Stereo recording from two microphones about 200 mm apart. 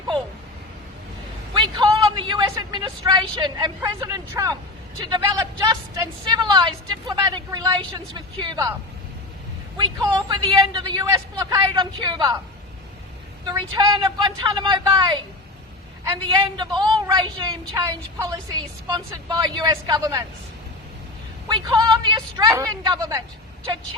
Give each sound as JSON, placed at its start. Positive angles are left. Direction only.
{"t": 1.5, "sound": "a woman's voice", "side_deg": -25}
{"t": 6.2, "sound": "a woman's voice", "side_deg": -20}
{"t": 9.7, "sound": "a woman's voice", "side_deg": -20}
{"t": 13.5, "sound": "a woman's voice", "side_deg": -20}
{"t": 16.2, "sound": "a woman's voice", "side_deg": -20}
{"t": 18.9, "sound": "a woman's voice", "side_deg": -20}
{"t": 21.5, "sound": "a woman's voice", "side_deg": -20}